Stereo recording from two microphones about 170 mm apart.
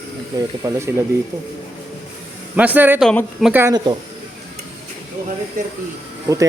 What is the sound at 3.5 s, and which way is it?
Speech, 15° right (ahead or behind).